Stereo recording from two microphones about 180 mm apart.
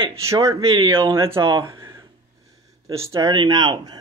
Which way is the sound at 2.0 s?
20° right (ahead or behind).